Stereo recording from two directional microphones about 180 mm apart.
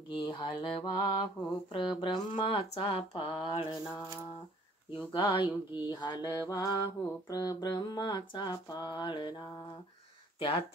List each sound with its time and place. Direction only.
0.1 s mantra: 25° left (ahead or behind)
5.1 s mantra: 25° left (ahead or behind)